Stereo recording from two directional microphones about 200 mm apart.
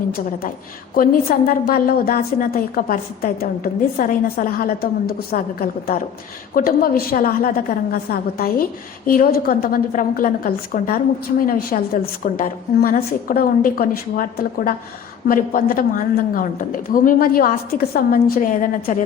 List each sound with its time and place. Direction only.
0.9 s a woman's voice: 45° left (ahead or behind)